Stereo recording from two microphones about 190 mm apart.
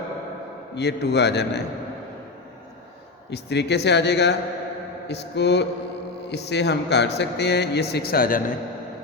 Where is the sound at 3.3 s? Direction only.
60° left (ahead or behind).